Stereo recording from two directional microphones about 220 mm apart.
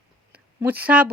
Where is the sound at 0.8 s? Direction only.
5° right (ahead or behind).